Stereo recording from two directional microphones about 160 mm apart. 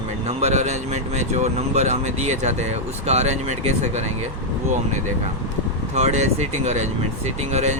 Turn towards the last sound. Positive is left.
turn(degrees=-45)  # may be behind; listen again after turning